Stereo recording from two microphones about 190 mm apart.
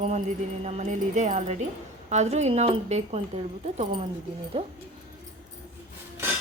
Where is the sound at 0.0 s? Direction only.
35° right (ahead or behind).